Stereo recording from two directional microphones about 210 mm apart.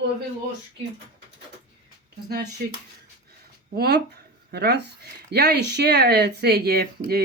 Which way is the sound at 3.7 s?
50° right (ahead or behind).